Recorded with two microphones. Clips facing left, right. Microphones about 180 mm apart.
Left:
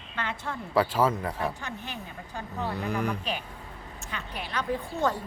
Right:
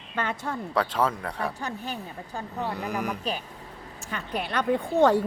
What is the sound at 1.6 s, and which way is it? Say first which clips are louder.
Speech: right 5 dB; 40° right (ahead or behind).